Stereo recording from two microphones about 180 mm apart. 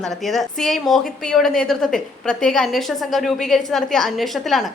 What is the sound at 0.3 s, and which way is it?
A woman's voice, centre (ahead or behind).